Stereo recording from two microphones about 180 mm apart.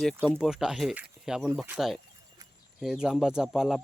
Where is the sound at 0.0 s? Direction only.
Centre (ahead or behind).